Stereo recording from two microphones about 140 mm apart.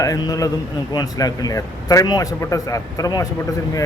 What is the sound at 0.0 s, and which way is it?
A man's voice, 25° left (ahead or behind).